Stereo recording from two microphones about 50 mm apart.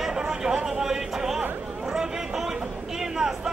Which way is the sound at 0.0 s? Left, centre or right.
Centre.